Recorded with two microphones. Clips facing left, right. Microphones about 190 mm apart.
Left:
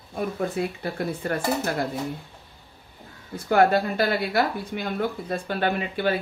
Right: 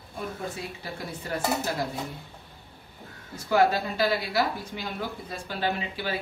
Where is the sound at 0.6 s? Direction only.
55° left (ahead or behind).